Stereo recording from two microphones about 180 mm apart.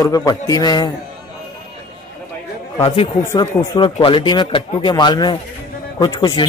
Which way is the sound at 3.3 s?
25° left (ahead or behind).